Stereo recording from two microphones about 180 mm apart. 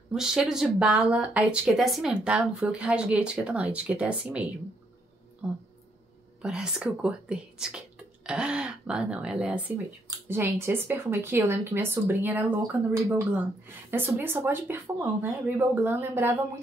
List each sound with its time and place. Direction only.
0.1 s speech: 5° right (ahead or behind)
6.4 s speech: 5° right (ahead or behind)
10.0 s speech: 15° right (ahead or behind)